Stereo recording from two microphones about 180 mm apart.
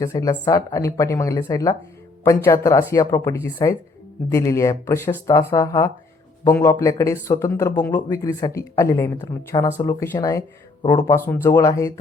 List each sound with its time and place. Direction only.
0.0 s speech: 20° left (ahead or behind)